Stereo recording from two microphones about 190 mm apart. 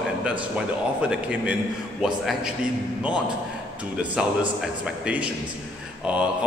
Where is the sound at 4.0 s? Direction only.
5° right (ahead or behind).